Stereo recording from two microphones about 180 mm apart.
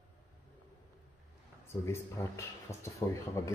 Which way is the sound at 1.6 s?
15° left (ahead or behind).